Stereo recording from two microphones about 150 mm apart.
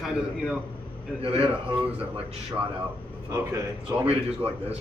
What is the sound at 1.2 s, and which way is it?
Speech, 40° right (ahead or behind).